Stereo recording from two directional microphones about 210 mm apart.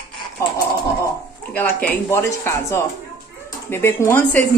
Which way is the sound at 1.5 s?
10° left (ahead or behind).